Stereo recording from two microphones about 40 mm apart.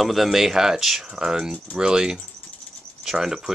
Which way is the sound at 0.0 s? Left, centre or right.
Centre.